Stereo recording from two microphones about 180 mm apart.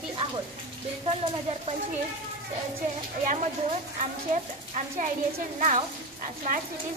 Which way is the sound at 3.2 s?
40° right (ahead or behind).